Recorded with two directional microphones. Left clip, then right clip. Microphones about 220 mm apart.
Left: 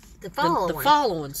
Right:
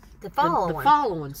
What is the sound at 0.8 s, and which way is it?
Speech, 15° left (ahead or behind).